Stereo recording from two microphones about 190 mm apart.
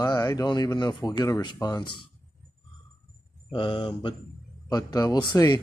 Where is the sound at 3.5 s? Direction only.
25° left (ahead or behind).